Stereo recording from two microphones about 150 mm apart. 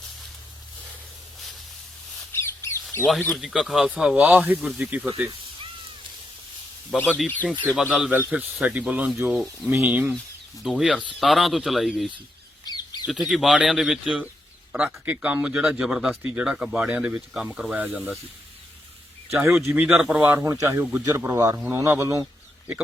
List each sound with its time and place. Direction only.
2.4 s bird: 15° left (ahead or behind)
3.2 s speech: centre (ahead or behind)
6.9 s speech: 10° left (ahead or behind)
7.7 s speech: 5° right (ahead or behind)
12.6 s bird: 25° left (ahead or behind)
13.1 s speech: centre (ahead or behind)
19.6 s speech: 10° right (ahead or behind)